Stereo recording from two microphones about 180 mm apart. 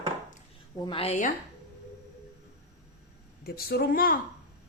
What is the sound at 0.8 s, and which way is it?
Speech, 30° left (ahead or behind).